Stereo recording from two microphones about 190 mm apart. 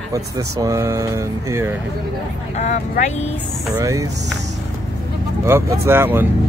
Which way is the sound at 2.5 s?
40° left (ahead or behind).